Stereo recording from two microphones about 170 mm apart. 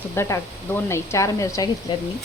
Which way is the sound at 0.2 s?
15° left (ahead or behind).